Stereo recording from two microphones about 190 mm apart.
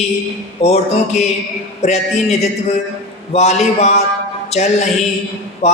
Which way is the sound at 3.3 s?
35° left (ahead or behind).